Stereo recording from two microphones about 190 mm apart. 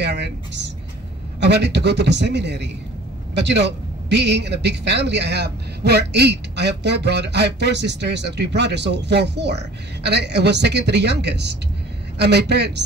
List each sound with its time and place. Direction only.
0.0 s a woman's voice: 65° right (ahead or behind)